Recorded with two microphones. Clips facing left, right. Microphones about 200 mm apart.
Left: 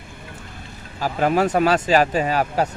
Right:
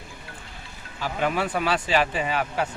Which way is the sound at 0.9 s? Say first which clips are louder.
Left 6 dB; 40° left (ahead or behind).